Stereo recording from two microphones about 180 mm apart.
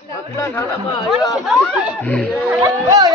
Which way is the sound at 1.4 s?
5° right (ahead or behind).